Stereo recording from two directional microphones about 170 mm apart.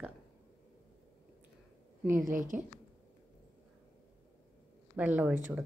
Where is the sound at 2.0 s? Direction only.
15° right (ahead or behind).